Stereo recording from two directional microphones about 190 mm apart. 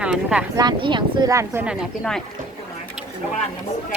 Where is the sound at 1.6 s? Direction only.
Centre (ahead or behind).